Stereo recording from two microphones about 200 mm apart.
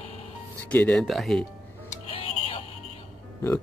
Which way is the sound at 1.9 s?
25° left (ahead or behind).